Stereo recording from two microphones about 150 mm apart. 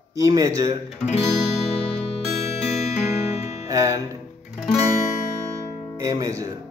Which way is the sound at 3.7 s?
20° right (ahead or behind).